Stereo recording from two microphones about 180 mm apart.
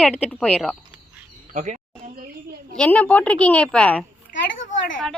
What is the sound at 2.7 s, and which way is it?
A woman's voice, 5° left (ahead or behind).